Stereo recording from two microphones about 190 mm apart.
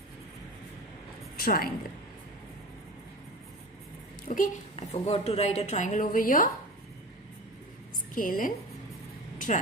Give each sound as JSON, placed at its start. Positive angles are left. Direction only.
{"t": 1.3, "sound": "a woman's voice", "side_deg": 50}
{"t": 4.3, "sound": "a woman's voice", "side_deg": 40}
{"t": 8.1, "sound": "a woman's voice", "side_deg": 45}